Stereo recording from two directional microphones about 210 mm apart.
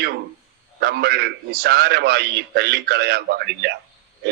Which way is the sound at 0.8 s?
50° right (ahead or behind).